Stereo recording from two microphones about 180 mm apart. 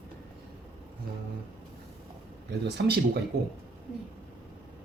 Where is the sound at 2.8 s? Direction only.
65° right (ahead or behind).